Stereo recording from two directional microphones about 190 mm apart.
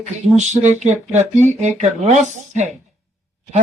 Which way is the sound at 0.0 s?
40° right (ahead or behind).